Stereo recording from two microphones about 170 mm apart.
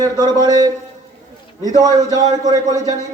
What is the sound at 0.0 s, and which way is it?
Speech, 25° right (ahead or behind).